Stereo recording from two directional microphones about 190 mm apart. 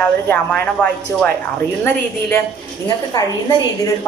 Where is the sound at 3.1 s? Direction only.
20° left (ahead or behind).